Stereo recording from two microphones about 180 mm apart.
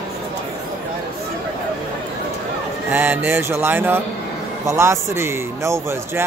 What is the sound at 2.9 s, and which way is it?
A man's voice, 10° right (ahead or behind).